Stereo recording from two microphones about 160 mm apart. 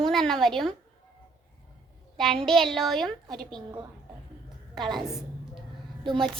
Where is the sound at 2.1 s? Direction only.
Centre (ahead or behind).